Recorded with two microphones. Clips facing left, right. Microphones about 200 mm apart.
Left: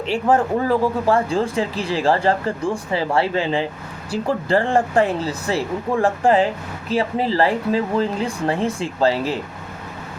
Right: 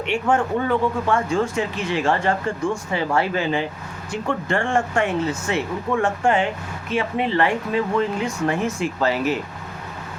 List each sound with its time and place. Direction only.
0.0 s speech: 35° left (ahead or behind)